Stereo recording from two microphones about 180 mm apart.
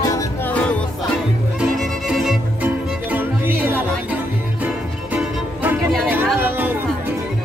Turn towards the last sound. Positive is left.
turn(degrees=-10)  # may be behind; listen again after turning